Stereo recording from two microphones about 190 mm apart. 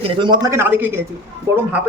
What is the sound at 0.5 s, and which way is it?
Speech, 10° right (ahead or behind).